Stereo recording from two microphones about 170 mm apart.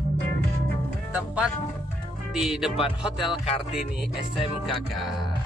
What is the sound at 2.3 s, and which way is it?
Music, centre (ahead or behind).